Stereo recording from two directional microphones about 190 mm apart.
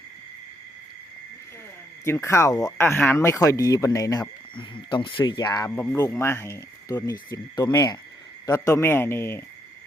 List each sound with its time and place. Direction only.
2.0 s speech: 15° left (ahead or behind)